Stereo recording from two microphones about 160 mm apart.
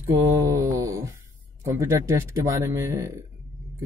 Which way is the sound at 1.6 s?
20° right (ahead or behind).